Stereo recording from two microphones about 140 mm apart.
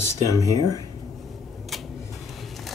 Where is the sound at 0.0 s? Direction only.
20° left (ahead or behind).